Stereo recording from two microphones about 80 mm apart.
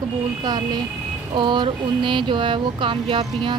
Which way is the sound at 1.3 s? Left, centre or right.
Right.